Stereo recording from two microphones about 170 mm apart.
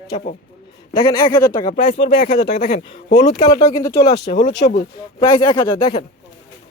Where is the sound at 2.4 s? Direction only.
80° left.